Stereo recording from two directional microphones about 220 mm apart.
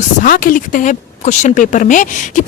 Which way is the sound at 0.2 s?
40° left (ahead or behind).